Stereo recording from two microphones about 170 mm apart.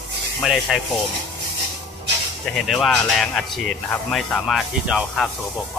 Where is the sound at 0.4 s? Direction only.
Centre (ahead or behind).